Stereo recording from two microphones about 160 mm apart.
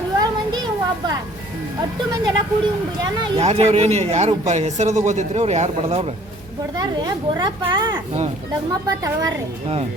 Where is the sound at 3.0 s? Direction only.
40° right (ahead or behind).